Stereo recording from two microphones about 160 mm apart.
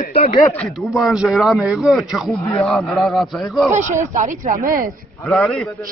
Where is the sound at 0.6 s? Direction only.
Centre (ahead or behind).